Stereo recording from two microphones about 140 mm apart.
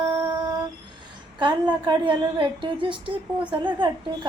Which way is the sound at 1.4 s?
30° right (ahead or behind).